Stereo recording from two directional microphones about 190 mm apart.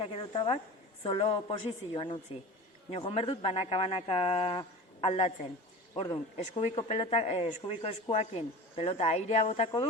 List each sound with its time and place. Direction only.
0.0 s speech: 30° left (ahead or behind)
6.3 s speech: 35° left (ahead or behind)